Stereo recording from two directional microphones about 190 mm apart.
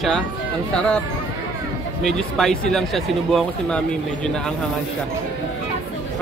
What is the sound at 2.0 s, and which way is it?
Speech, 5° left (ahead or behind).